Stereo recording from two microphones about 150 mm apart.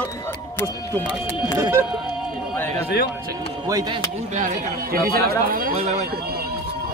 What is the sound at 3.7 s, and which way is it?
Speech, 25° right (ahead or behind).